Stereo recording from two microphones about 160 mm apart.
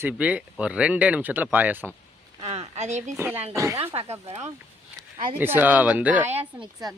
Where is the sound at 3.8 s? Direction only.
40° right (ahead or behind).